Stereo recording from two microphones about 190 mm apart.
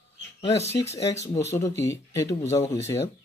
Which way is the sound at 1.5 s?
15° left (ahead or behind).